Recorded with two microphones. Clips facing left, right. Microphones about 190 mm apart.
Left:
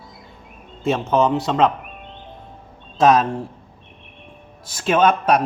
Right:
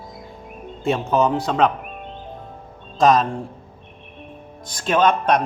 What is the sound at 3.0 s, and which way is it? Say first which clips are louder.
Speech: left 1 dB; 5° left (ahead or behind).